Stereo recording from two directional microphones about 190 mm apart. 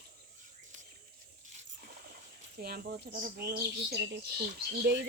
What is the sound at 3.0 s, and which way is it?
Speech, 45° right (ahead or behind).